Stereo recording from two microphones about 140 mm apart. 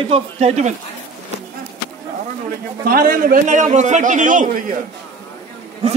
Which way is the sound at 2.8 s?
90° right.